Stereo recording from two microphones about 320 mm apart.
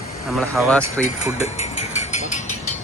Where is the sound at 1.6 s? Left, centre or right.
Left.